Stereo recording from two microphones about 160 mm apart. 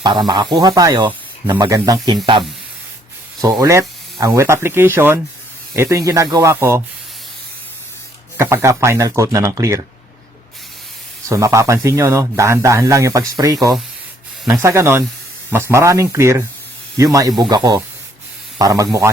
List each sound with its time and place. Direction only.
0.0 s speech: 25° right (ahead or behind)
3.6 s speech: 20° right (ahead or behind)
8.4 s speech: 15° right (ahead or behind)
11.3 s speech: 20° right (ahead or behind)